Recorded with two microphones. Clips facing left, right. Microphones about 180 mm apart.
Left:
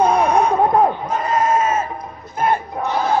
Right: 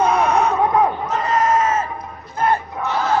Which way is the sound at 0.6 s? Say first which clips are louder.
Left 2 dB; 45° left (ahead or behind).